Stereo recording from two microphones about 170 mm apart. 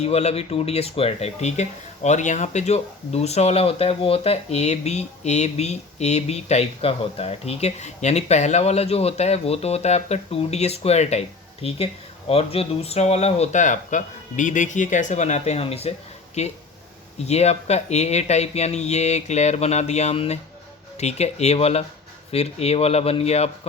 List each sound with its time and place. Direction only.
0.0 s speech: 40° left (ahead or behind)